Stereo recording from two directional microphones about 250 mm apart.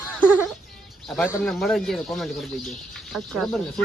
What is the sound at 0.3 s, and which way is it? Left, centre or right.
A woman's voice, centre.